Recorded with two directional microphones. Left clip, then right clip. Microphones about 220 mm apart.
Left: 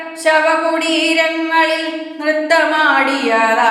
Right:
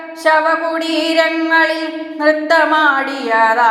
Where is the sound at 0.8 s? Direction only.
15° right (ahead or behind).